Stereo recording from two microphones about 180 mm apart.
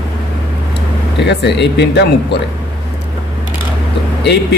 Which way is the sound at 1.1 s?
70° left (ahead or behind).